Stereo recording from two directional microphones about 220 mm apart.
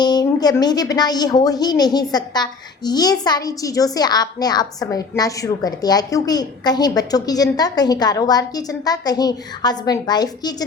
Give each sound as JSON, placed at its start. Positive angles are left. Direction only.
{"t": 0.0, "sound": "a woman's voice", "side_deg": 20}